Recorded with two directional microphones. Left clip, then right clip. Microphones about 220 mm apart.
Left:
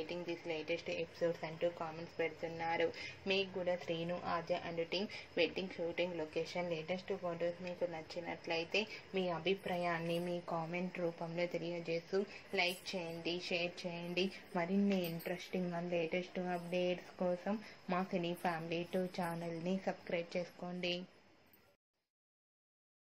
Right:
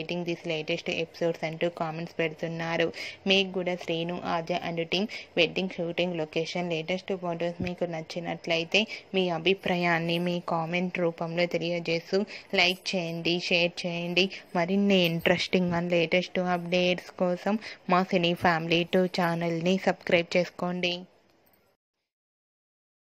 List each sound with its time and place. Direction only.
0.0 s speech: 40° right (ahead or behind)